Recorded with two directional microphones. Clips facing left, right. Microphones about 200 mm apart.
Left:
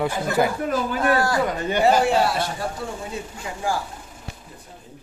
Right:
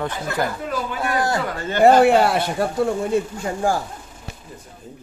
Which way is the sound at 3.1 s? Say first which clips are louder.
Right 10 dB; 50° right (ahead or behind).